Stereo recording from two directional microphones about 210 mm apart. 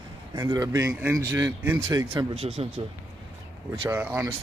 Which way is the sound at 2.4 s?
30° right (ahead or behind).